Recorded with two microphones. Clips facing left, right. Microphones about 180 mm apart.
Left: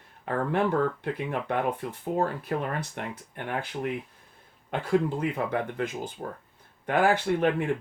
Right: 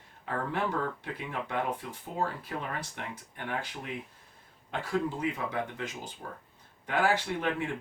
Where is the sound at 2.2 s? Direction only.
55° left (ahead or behind).